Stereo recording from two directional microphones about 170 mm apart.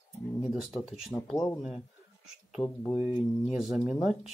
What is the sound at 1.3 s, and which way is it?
Speech, 15° left (ahead or behind).